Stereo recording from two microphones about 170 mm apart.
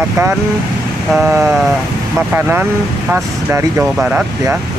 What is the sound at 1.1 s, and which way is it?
Speech, 15° right (ahead or behind).